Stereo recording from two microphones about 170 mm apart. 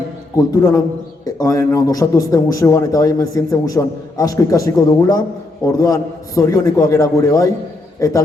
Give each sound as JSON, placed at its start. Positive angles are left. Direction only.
{"t": 0.3, "sound": "a man's voice", "side_deg": 20}